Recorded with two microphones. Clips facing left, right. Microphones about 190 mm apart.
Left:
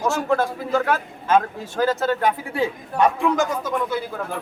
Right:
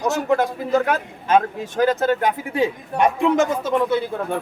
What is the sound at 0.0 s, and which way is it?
A man's voice, 20° right (ahead or behind).